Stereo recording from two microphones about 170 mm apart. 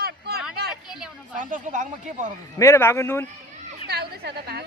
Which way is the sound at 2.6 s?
15° left (ahead or behind).